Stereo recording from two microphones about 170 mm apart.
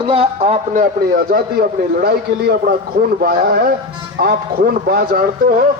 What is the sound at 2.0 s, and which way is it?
Speech, 70° right (ahead or behind).